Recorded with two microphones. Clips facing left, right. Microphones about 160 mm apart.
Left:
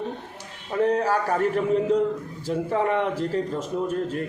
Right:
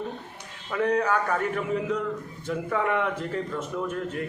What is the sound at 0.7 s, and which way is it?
A man's voice, 30° left (ahead or behind).